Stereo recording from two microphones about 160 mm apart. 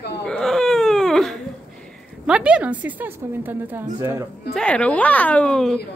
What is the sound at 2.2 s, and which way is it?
A woman's voice, 5° right (ahead or behind).